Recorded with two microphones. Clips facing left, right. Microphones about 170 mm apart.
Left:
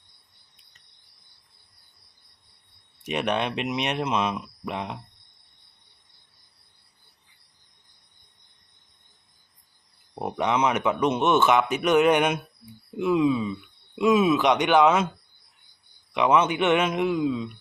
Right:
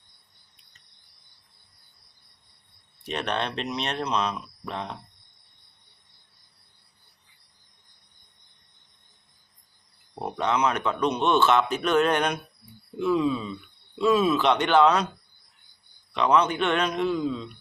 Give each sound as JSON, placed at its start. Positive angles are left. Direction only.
{"t": 3.0, "sound": "speech", "side_deg": 15}
{"t": 10.2, "sound": "speech", "side_deg": 15}
{"t": 16.1, "sound": "speech", "side_deg": 15}